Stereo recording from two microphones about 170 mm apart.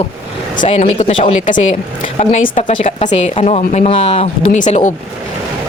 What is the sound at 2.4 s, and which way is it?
Speech, 50° left (ahead or behind).